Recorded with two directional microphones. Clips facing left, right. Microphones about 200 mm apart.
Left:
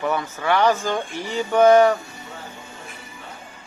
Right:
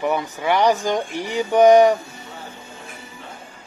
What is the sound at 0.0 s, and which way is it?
Speech, 15° right (ahead or behind).